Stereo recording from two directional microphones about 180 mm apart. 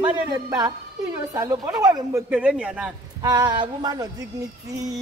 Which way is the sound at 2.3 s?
5° right (ahead or behind).